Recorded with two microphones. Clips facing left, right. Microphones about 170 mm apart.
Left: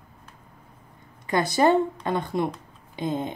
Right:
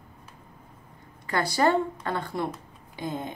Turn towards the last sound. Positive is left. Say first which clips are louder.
# left 5 dB
turn(degrees=20)  # may be behind; listen again after turning